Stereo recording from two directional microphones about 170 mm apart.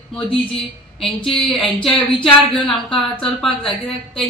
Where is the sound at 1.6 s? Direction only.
30° left (ahead or behind).